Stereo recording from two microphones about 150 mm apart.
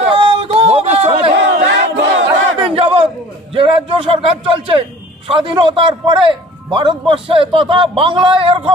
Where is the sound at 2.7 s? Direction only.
40° right (ahead or behind).